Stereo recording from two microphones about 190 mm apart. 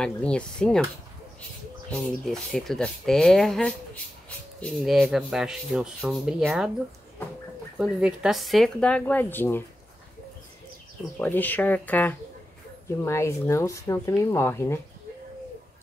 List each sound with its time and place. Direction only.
0.0 s speech: 5° left (ahead or behind)
1.9 s speech: 5° left (ahead or behind)
7.8 s speech: 5° right (ahead or behind)
11.1 s speech: 10° left (ahead or behind)